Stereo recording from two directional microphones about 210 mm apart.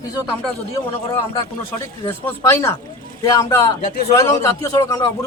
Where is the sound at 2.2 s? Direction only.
10° left (ahead or behind).